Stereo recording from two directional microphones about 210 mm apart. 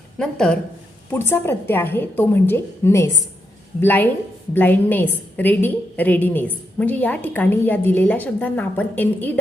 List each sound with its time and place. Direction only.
0.2 s a woman's voice: 5° left (ahead or behind)